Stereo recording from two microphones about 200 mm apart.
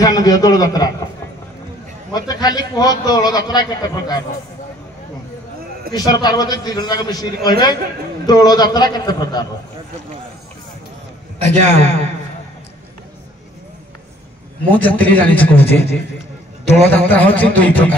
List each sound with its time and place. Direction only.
0.0 s a man's voice: 20° left (ahead or behind)
2.1 s a man's voice: 20° left (ahead or behind)
5.9 s a man's voice: 20° left (ahead or behind)
11.4 s a man's voice: 55° left (ahead or behind)
14.7 s a man's voice: 10° left (ahead or behind)
16.9 s a man's voice: 10° left (ahead or behind)